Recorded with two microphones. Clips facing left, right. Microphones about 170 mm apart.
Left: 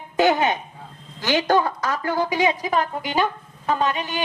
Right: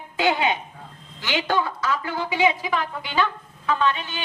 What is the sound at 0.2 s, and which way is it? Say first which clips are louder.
A woman's voice: left 3 dB; 45° left (ahead or behind).